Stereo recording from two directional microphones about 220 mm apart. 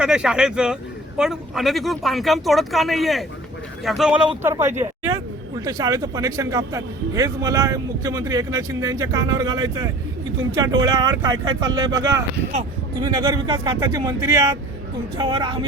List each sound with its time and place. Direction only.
0.0 s a woman's voice: 5° right (ahead or behind); by 15.5 s 20° right (ahead or behind)